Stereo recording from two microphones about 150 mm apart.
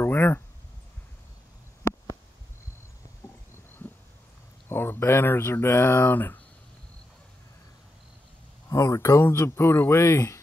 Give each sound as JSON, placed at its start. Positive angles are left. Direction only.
{"t": 0.0, "sound": "a sound", "side_deg": 15}
{"t": 4.6, "sound": "speech", "side_deg": 15}
{"t": 8.6, "sound": "speech", "side_deg": 20}